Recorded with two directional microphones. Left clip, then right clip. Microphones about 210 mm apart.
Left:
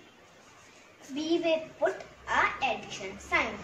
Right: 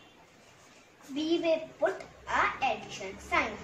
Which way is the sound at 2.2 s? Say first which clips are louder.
Left 1 dB; 15° left (ahead or behind).